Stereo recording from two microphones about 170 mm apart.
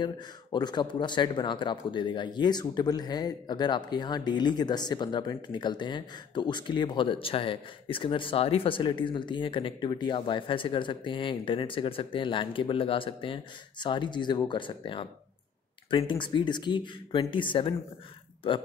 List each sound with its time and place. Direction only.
0.0 s speech: 25° left (ahead or behind)